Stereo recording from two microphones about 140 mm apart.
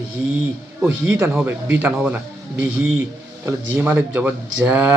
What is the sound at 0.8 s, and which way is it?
Speech, 15° right (ahead or behind).